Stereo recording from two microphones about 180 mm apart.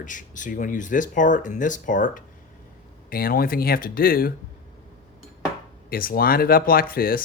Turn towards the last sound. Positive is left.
turn(degrees=55)  # may be behind; listen again after turning